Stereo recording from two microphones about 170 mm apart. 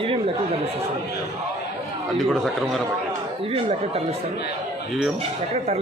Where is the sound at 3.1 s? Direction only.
35° right (ahead or behind).